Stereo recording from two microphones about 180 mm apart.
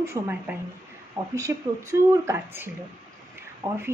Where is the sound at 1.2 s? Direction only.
20° right (ahead or behind).